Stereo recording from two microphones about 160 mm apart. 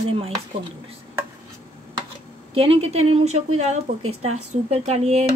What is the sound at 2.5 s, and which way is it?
A woman's voice, 35° right (ahead or behind).